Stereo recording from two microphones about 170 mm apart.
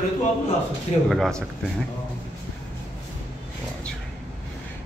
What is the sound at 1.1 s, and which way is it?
Speech, centre (ahead or behind).